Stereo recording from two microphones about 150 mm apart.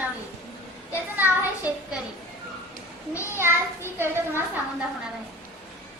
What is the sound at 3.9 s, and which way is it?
Speech, 15° right (ahead or behind).